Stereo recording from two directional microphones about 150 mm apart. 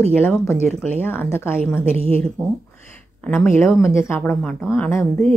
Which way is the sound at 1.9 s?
40° right (ahead or behind).